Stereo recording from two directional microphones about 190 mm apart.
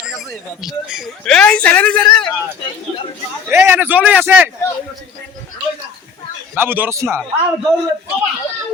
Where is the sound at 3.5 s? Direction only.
15° right (ahead or behind).